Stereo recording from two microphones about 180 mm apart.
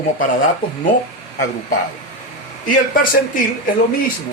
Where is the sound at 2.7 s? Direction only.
50° left (ahead or behind).